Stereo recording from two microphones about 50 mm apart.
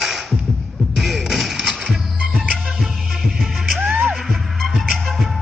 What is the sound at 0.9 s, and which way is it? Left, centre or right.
Music, centre.